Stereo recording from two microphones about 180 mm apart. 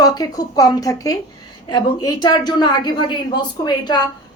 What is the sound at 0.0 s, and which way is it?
Speech, 20° left (ahead or behind).